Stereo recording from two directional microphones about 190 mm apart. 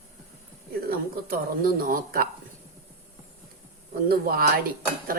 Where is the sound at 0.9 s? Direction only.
50° right (ahead or behind).